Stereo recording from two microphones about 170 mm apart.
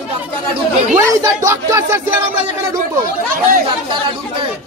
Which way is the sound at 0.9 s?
15° right (ahead or behind).